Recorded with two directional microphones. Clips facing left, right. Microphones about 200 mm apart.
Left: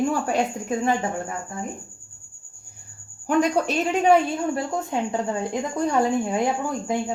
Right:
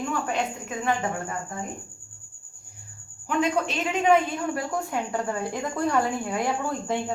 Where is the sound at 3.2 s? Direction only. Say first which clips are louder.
Left 4 dB; 40° left (ahead or behind).